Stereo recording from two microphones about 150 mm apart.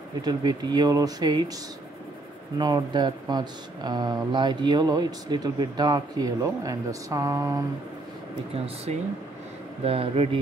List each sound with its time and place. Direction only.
0.2 s speech: 25° right (ahead or behind)
2.6 s speech: 30° right (ahead or behind)
9.8 s speech: 40° right (ahead or behind)